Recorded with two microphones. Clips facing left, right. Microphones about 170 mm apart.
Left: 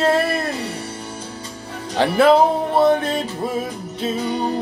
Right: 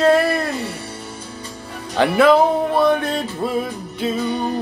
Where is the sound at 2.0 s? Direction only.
30° left (ahead or behind).